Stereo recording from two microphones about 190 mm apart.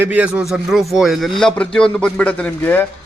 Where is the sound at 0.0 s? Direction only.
5° right (ahead or behind); by 2.8 s 10° left (ahead or behind).